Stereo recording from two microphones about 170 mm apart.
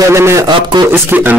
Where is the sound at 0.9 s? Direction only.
10° right (ahead or behind).